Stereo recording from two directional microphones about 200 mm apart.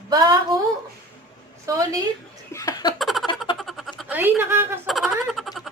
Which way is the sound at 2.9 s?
Centre (ahead or behind).